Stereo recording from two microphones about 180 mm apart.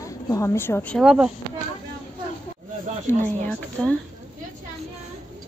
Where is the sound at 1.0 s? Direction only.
5° right (ahead or behind).